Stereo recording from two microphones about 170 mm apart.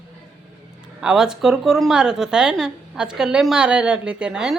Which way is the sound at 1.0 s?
5° right (ahead or behind).